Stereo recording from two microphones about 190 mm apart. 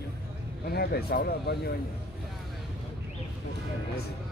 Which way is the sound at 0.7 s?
55° left (ahead or behind).